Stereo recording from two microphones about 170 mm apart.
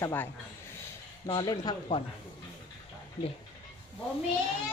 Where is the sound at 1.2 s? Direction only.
25° left (ahead or behind).